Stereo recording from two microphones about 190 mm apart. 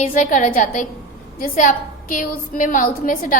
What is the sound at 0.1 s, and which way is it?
A woman's voice, 40° left (ahead or behind).